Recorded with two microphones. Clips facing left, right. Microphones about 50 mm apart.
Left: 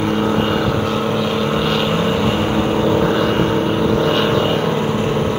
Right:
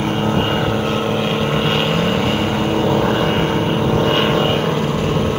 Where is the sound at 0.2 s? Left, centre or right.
Right.